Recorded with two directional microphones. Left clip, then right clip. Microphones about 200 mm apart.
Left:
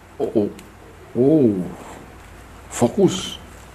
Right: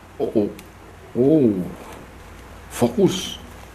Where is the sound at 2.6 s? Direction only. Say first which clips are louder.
Left 1 dB; 10° left (ahead or behind).